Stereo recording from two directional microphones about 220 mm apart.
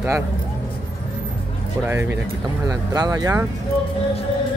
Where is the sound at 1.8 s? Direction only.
10° right (ahead or behind).